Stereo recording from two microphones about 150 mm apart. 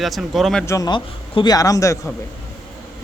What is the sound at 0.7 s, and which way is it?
A man's voice, 25° left (ahead or behind).